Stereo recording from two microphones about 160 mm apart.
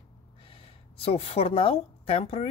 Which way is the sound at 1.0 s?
35° left (ahead or behind).